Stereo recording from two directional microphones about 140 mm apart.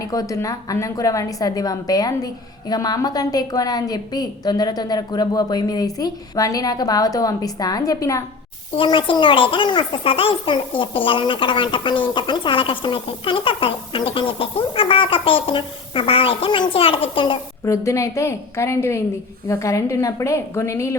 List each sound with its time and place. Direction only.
0.0 s a woman's voice: 25° left (ahead or behind)
8.7 s a child's voice: 35° left (ahead or behind)
17.7 s a woman's voice: 20° left (ahead or behind)